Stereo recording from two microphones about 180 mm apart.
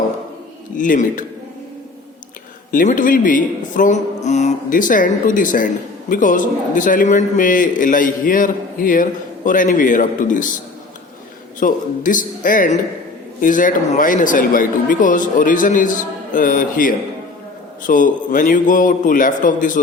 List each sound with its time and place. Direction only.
0.8 s speech: 50° left (ahead or behind)
2.7 s speech: 50° left (ahead or behind)
11.6 s speech: 45° left (ahead or behind)